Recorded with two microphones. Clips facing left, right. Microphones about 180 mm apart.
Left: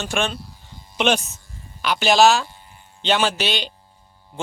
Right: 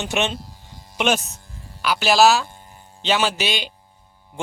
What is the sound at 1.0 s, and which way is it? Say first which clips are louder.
A man's voice: left 1 dB; 5° right (ahead or behind).